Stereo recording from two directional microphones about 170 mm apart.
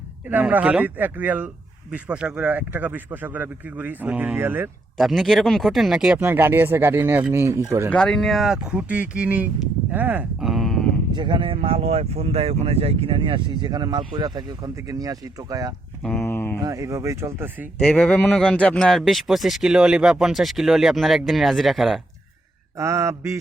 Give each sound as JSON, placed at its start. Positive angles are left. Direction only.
{"t": 0.3, "sound": "speech", "side_deg": -10}
{"t": 4.9, "sound": "speech", "side_deg": 0}
{"t": 7.9, "sound": "a man's voice", "side_deg": 5}
{"t": 9.9, "sound": "a sound", "side_deg": -10}
{"t": 11.1, "sound": "speech", "side_deg": -25}
{"t": 16.0, "sound": "mantra", "side_deg": 10}
{"t": 16.6, "sound": "speech", "side_deg": -20}
{"t": 17.8, "sound": "a man's voice", "side_deg": 5}
{"t": 22.8, "sound": "speech", "side_deg": -15}